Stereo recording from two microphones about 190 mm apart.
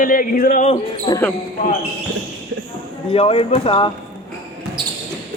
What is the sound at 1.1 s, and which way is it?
Speech, 25° left (ahead or behind).